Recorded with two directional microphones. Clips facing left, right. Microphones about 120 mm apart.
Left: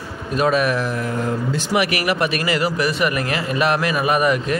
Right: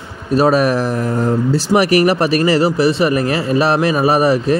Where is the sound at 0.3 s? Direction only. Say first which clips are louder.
Right 5 dB; 40° right (ahead or behind).